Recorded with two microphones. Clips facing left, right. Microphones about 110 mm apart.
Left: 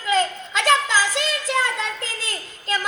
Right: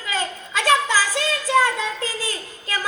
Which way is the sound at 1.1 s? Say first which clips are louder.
Right 1 dB; 20° left (ahead or behind).